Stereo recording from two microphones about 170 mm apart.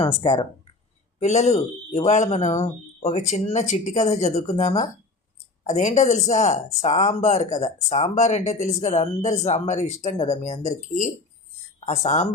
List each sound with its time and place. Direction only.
0.0 s speech: 35° left (ahead or behind)